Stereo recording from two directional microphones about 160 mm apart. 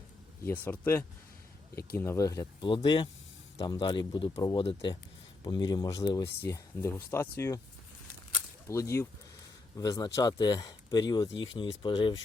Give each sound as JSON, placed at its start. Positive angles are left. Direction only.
{"t": 0.4, "sound": "speech", "side_deg": 10}
{"t": 8.6, "sound": "speech", "side_deg": 20}